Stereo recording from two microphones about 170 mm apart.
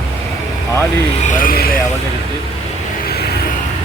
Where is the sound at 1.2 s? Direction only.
50° left (ahead or behind).